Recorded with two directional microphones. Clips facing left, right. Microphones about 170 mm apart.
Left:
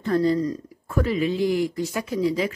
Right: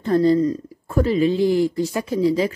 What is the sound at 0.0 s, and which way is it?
Speech, 30° right (ahead or behind).